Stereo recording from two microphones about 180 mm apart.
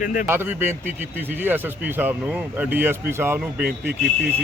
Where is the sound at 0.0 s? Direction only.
50° left (ahead or behind).